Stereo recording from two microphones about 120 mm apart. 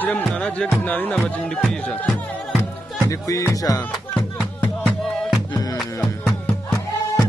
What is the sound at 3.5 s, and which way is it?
Speech, 30° left (ahead or behind).